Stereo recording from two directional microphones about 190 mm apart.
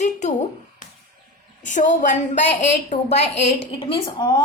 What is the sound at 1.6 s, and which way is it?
A woman's voice, 40° left (ahead or behind).